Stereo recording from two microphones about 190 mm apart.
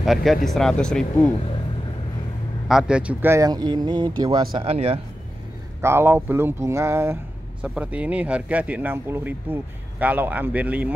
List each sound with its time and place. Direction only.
0.0 s speech: centre (ahead or behind)
2.7 s speech: 5° right (ahead or behind); by 5.0 s 30° right (ahead or behind)
5.8 s a man's voice: 15° right (ahead or behind)